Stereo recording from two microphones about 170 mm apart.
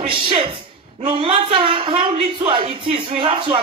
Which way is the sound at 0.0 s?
30° right (ahead or behind).